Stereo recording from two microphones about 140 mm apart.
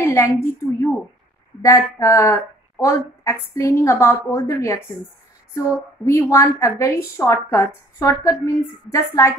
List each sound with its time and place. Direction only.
0.0 s a woman's voice: 20° left (ahead or behind)